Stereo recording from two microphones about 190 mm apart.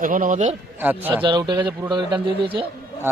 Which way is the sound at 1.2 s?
25° right (ahead or behind).